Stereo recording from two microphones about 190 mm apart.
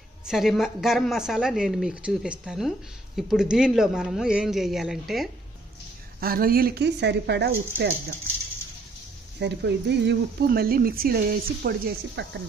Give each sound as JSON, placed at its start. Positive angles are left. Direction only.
{"t": 0.2, "sound": "speech", "side_deg": 0}
{"t": 6.2, "sound": "speech", "side_deg": -50}
{"t": 9.4, "sound": "speech", "side_deg": -65}